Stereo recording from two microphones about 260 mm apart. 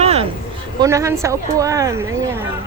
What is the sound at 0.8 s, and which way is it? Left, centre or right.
A woman's voice, centre.